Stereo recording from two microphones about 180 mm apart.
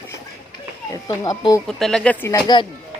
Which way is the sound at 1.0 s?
20° left (ahead or behind).